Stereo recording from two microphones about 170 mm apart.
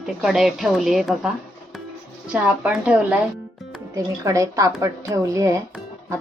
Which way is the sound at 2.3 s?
5° right (ahead or behind).